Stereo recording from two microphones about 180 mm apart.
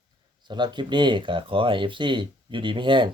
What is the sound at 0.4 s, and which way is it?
Speech, 25° right (ahead or behind).